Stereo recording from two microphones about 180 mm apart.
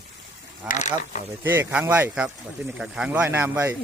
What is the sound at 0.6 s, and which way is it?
Speech, 40° left (ahead or behind).